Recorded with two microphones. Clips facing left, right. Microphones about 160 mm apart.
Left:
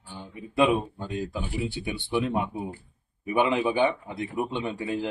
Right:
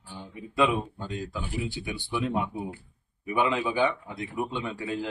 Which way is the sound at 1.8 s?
30° left (ahead or behind).